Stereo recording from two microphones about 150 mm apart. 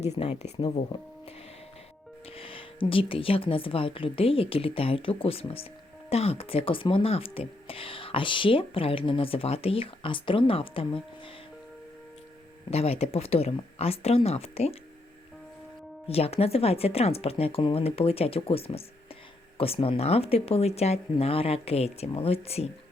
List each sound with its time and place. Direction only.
0.1 s speech: 45° left (ahead or behind)
2.3 s speech: 35° left (ahead or behind)
12.7 s speech: 45° left (ahead or behind)
16.0 s speech: 40° left (ahead or behind)